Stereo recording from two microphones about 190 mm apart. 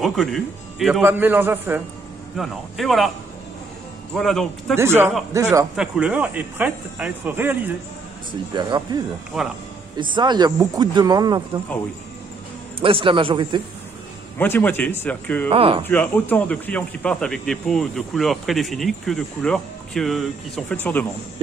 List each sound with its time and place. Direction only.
0.0 s speech: centre (ahead or behind)
2.3 s speech: centre (ahead or behind)
4.1 s speech: centre (ahead or behind)
4.7 s speech: 15° right (ahead or behind)
5.8 s speech: 5° right (ahead or behind)
8.5 s speech: 20° right (ahead or behind)
12.8 s speech: 25° right (ahead or behind)
14.4 s speech: 10° left (ahead or behind)
15.5 s speech: 30° right (ahead or behind)
15.9 s speech: 10° left (ahead or behind)